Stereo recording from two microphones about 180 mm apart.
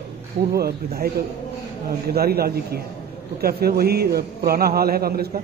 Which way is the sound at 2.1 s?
60° right (ahead or behind).